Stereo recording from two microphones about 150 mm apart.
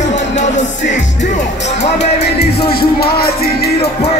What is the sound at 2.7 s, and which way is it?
Music, 90° left.